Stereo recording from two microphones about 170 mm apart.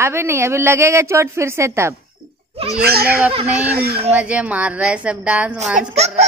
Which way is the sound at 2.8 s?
65° right (ahead or behind).